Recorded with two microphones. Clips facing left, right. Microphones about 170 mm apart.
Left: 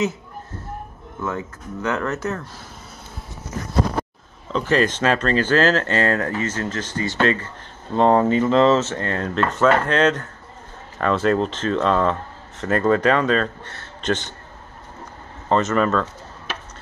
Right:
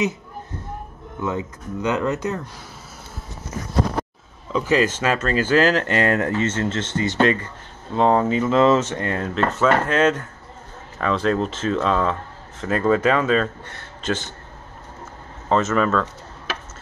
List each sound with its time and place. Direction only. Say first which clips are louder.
1.2 s speech: right 2 dB; 15° right (ahead or behind)
4.5 s speech: even; 10° right (ahead or behind)
7.9 s speech: left 2 dB; centre (ahead or behind)
9.3 s speech: left 1 dB; centre (ahead or behind)
15.4 s speech: even; centre (ahead or behind)